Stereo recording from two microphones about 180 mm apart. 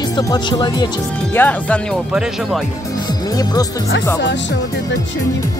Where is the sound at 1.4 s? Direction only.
10° left (ahead or behind).